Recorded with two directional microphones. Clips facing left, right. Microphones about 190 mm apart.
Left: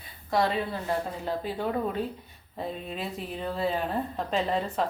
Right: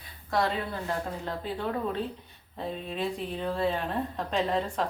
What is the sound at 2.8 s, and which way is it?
A woman's voice, 5° left (ahead or behind).